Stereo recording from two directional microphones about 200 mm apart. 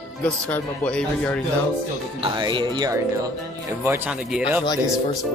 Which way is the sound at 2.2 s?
25° right (ahead or behind).